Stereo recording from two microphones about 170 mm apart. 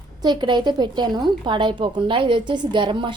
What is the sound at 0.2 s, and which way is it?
A woman's voice, 25° right (ahead or behind).